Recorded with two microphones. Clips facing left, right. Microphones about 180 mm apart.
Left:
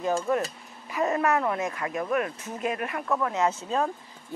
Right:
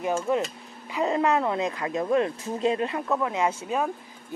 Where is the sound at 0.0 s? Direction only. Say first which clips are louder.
Right 1 dB; 15° right (ahead or behind).